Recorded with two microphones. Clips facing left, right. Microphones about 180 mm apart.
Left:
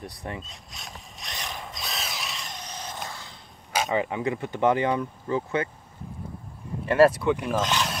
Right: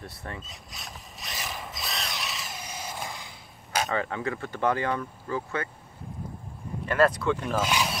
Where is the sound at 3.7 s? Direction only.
10° left (ahead or behind).